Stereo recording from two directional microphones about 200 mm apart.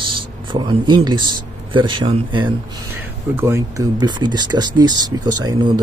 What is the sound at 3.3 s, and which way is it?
Speech, 15° right (ahead or behind).